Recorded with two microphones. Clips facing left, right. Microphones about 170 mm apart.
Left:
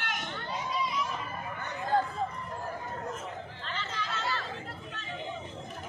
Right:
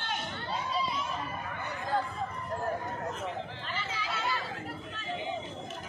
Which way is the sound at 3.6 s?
10° right (ahead or behind).